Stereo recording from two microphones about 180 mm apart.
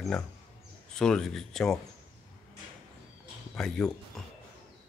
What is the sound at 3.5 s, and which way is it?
Speech, 5° left (ahead or behind).